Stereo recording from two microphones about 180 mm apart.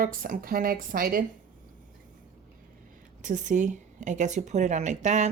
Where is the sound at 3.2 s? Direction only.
45° right (ahead or behind).